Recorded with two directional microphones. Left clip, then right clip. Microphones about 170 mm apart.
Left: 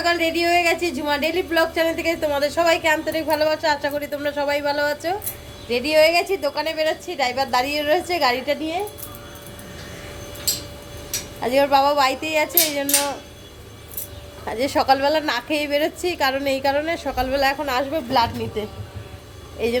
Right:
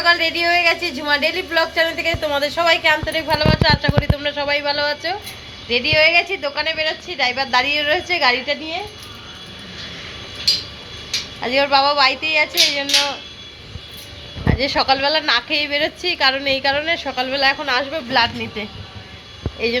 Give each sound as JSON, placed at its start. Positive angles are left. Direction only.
{"t": 0.0, "sound": "a woman's voice", "side_deg": 15}
{"t": 11.3, "sound": "a woman's voice", "side_deg": 20}
{"t": 14.4, "sound": "a woman's voice", "side_deg": 20}